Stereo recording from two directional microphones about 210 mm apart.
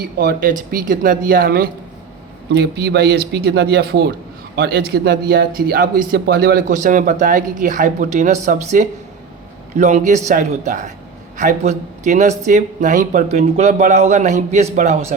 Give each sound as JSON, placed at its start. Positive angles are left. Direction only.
{"t": 0.2, "sound": "speech", "side_deg": -40}